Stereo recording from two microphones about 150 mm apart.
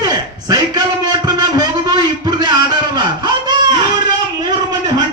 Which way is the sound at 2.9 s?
30° right (ahead or behind).